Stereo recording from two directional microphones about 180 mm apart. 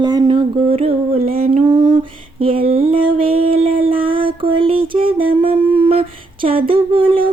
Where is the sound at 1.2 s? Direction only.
55° right (ahead or behind).